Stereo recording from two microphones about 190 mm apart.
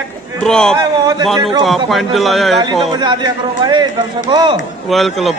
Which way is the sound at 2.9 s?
25° right (ahead or behind).